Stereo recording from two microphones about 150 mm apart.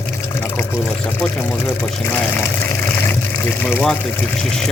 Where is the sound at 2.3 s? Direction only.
15° left (ahead or behind).